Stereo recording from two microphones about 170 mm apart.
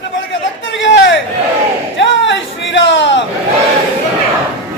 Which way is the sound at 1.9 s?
90° left.